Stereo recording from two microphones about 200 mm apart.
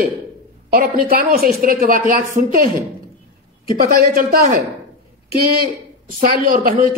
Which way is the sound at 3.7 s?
45° right (ahead or behind).